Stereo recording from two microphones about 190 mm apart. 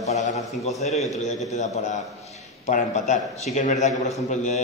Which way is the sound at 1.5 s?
40° left (ahead or behind).